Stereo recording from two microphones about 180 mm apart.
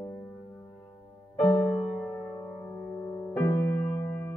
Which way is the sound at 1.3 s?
5° left (ahead or behind).